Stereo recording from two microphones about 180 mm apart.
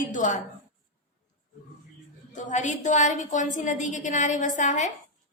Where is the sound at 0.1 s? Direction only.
45° left (ahead or behind).